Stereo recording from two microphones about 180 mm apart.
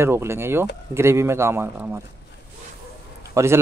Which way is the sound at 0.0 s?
15° right (ahead or behind).